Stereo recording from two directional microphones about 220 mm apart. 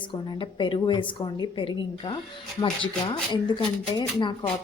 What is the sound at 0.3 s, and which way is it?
Speech, 20° left (ahead or behind).